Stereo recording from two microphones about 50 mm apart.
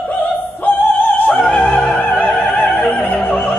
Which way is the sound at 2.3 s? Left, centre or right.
Centre.